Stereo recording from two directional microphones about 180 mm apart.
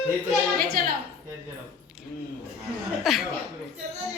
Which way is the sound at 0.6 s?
55° right (ahead or behind).